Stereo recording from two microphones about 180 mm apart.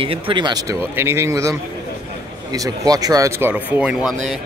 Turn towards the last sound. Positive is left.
turn(degrees=-5)  # may be behind; listen again after turning